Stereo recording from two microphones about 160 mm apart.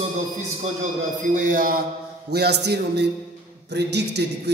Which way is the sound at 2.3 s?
90° right.